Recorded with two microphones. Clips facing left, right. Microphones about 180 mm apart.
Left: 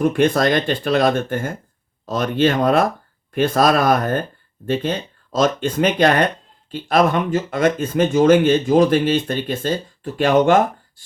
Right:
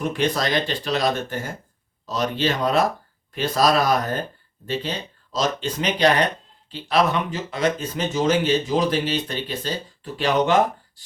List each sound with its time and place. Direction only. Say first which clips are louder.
0.0 s speech: left 7 dB; 50° left (ahead or behind)